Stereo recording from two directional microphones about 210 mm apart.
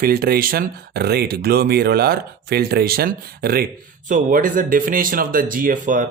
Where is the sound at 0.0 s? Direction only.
45° right (ahead or behind).